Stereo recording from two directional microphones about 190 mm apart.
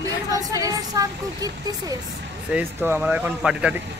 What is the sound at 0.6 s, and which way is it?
Speech, 20° right (ahead or behind).